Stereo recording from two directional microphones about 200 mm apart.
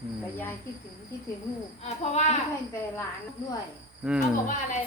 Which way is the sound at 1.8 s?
35° left (ahead or behind).